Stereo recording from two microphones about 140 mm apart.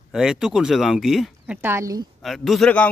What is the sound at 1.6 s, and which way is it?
Speech, 20° right (ahead or behind).